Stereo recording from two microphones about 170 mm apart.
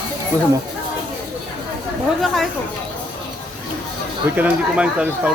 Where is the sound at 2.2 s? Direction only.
Centre (ahead or behind).